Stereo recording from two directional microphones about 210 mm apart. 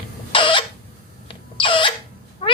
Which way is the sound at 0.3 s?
25° left (ahead or behind).